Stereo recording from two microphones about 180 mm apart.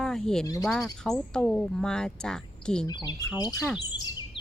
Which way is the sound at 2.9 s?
25° left (ahead or behind).